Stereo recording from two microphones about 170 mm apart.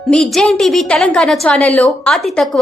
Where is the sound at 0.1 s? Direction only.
5° left (ahead or behind).